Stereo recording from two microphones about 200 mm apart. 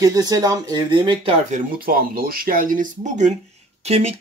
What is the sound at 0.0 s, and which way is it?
Speech, 20° right (ahead or behind).